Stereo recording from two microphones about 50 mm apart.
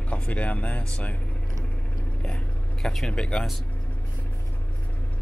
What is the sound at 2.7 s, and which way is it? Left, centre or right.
Speech, centre.